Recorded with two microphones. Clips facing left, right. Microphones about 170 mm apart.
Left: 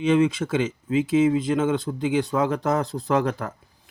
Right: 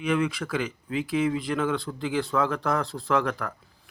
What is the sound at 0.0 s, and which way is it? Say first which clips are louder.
Speech: left 6 dB; 25° left (ahead or behind).